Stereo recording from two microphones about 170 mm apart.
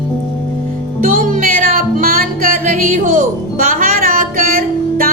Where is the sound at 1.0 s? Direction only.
50° right (ahead or behind).